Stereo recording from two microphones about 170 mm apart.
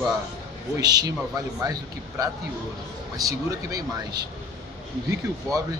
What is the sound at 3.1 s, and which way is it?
A man's voice, 20° right (ahead or behind).